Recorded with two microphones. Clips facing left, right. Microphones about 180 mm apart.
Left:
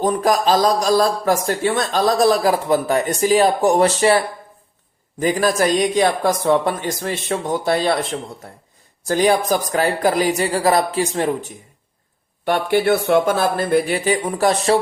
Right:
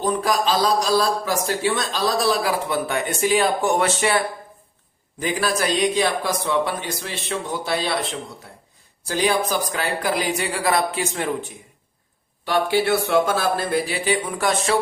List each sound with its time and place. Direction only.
0.0 s a man's voice: 50° left (ahead or behind)
5.2 s a man's voice: 45° left (ahead or behind)
9.0 s speech: 45° left (ahead or behind)
12.5 s a man's voice: 55° left (ahead or behind); by 14.8 s 35° left (ahead or behind)